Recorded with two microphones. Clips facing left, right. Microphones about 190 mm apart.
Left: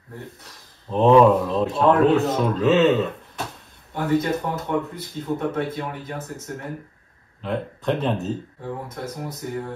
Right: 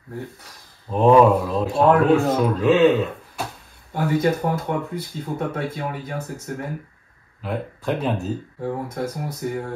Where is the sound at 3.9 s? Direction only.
50° right (ahead or behind).